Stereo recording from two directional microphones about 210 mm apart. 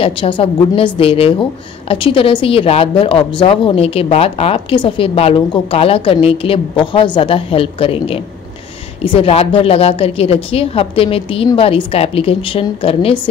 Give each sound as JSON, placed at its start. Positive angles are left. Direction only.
{"t": 0.0, "sound": "a woman's voice", "side_deg": 25}